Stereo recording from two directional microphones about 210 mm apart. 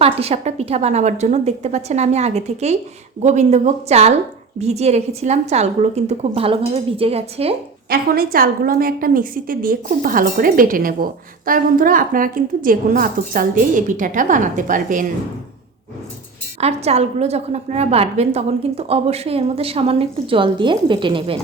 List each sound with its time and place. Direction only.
0.0 s a woman's voice: 30° right (ahead or behind)
7.9 s a woman's voice: 45° right (ahead or behind)
16.6 s a woman's voice: 30° right (ahead or behind)